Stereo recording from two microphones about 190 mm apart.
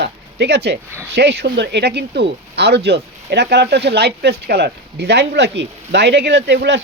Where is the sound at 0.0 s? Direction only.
65° right (ahead or behind).